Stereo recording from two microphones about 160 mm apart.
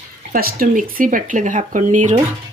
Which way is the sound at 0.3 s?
65° right (ahead or behind).